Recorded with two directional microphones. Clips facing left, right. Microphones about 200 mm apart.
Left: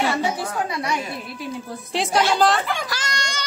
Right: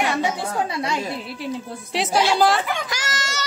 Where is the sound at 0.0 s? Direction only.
20° right (ahead or behind).